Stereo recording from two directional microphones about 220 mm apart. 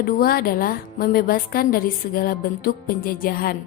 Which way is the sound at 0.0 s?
40° left (ahead or behind).